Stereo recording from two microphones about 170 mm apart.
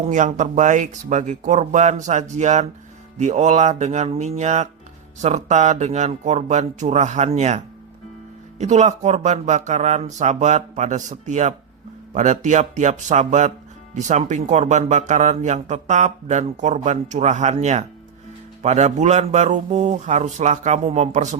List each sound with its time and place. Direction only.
0.0 s speech: 45° right (ahead or behind)